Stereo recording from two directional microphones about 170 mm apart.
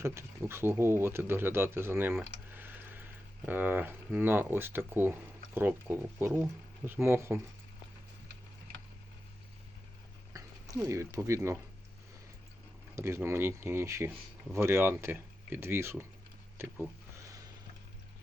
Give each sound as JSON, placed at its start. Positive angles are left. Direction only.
{"t": 0.0, "sound": "speech", "side_deg": -15}
{"t": 10.3, "sound": "speech", "side_deg": -20}
{"t": 13.0, "sound": "speech", "side_deg": -15}
{"t": 16.6, "sound": "speech", "side_deg": -5}